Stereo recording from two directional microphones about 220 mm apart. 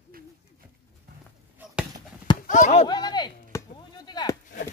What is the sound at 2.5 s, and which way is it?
Speech, 35° left (ahead or behind).